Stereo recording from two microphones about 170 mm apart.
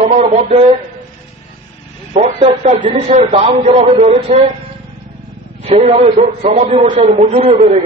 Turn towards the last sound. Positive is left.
turn(degrees=-35)  # may be behind; listen again after turning